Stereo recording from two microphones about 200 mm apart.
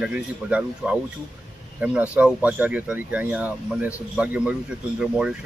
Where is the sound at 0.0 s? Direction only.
5° right (ahead or behind).